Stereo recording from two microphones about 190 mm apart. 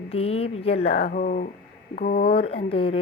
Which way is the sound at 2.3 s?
30° left (ahead or behind).